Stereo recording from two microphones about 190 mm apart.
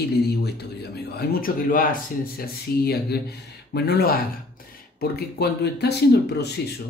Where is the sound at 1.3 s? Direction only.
50° left (ahead or behind).